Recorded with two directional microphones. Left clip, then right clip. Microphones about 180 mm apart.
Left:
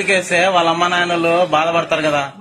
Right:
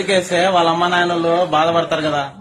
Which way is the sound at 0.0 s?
Centre (ahead or behind).